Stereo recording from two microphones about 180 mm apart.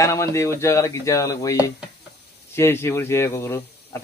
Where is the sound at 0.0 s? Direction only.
15° left (ahead or behind).